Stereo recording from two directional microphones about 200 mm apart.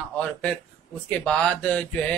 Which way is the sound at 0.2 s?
5° left (ahead or behind).